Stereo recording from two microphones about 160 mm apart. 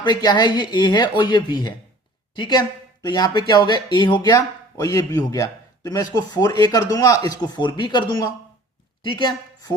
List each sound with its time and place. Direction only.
0.0 s speech: 25° left (ahead or behind)